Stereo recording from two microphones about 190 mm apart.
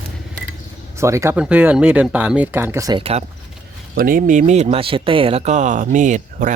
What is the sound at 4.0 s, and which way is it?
Speech, 45° right (ahead or behind).